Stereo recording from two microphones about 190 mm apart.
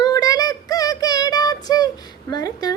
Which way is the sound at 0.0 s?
20° left (ahead or behind).